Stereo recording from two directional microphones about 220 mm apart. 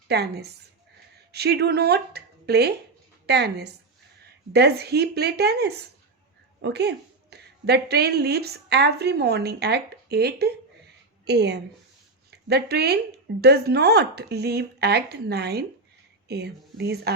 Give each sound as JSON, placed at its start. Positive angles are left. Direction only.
{"t": 0.1, "sound": "a woman's voice", "side_deg": -50}